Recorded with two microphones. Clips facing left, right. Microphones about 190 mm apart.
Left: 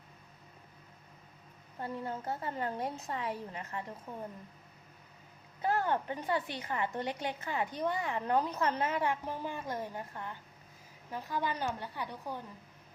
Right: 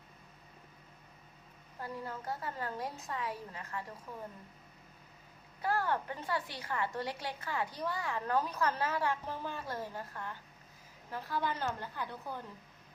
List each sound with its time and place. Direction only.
1.8 s a woman's voice: 25° left (ahead or behind)
5.6 s a woman's voice: 20° left (ahead or behind)